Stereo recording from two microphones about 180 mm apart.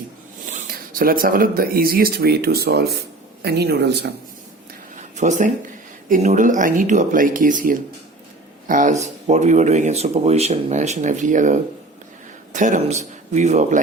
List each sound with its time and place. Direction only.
0.4 s speech: 45° right (ahead or behind); by 4.1 s 65° right (ahead or behind)
4.9 s a sound: 40° right (ahead or behind)
6.1 s speech: 45° right (ahead or behind)